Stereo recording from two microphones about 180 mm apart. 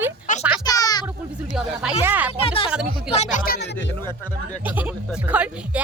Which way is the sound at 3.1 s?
40° left (ahead or behind).